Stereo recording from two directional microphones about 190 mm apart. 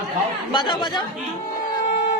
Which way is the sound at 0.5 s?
25° left (ahead or behind).